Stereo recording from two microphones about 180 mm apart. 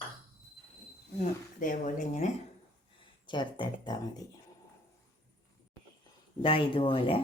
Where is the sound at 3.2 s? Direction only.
25° left (ahead or behind).